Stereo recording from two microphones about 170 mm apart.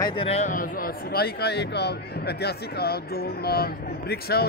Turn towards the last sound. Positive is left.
turn(degrees=65)  # may be behind; listen again after turning